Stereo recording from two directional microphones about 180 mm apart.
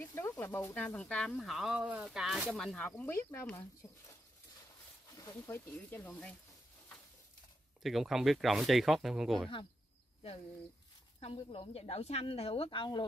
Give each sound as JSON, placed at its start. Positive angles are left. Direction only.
{"t": 0.0, "sound": "speech", "side_deg": 10}
{"t": 5.1, "sound": "speech", "side_deg": 15}
{"t": 7.8, "sound": "speech", "side_deg": 0}
{"t": 11.3, "sound": "a woman's voice", "side_deg": 30}